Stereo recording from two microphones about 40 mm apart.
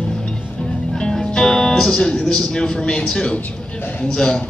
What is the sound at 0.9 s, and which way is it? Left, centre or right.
Music, centre.